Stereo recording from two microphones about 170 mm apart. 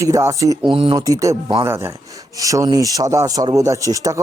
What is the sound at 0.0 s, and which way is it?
Speech, 20° right (ahead or behind).